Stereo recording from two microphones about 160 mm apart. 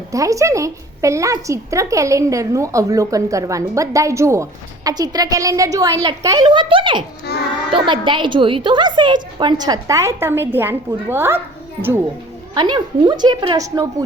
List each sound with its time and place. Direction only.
0.1 s a woman's voice: 20° right (ahead or behind)
7.3 s a child's voice: 75° left (ahead or behind)
7.7 s a woman's voice: 30° right (ahead or behind); by 11.9 s 15° right (ahead or behind)
12.5 s a woman's voice: 30° right (ahead or behind)